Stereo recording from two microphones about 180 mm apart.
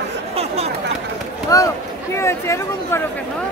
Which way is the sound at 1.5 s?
20° left (ahead or behind).